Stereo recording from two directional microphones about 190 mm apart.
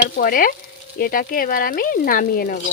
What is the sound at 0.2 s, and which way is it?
A woman's voice, 45° left (ahead or behind).